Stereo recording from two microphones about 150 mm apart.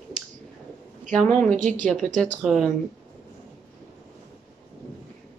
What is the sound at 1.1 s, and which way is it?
Speech, 5° left (ahead or behind).